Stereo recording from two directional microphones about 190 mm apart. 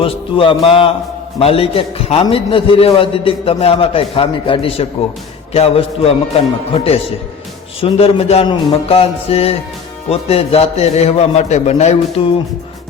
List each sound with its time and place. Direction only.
0.0 s a man's voice: 30° left (ahead or behind)